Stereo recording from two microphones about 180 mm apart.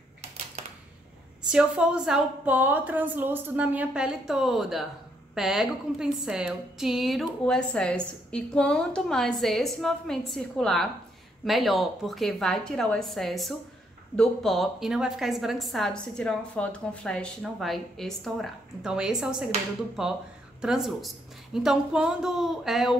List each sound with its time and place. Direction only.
1.5 s a woman's voice: 5° right (ahead or behind)